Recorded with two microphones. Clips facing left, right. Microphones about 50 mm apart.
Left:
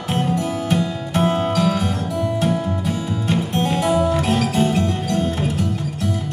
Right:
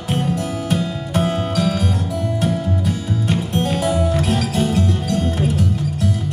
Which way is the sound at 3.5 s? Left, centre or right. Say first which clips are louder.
Right 1 dB; left.